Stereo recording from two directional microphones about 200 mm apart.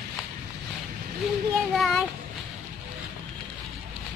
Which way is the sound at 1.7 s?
Centre (ahead or behind).